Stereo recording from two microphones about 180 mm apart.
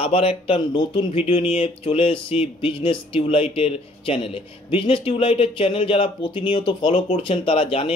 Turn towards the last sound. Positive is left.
turn(degrees=30)  # may be behind; listen again after turning